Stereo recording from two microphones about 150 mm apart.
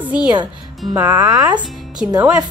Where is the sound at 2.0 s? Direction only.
10° right (ahead or behind).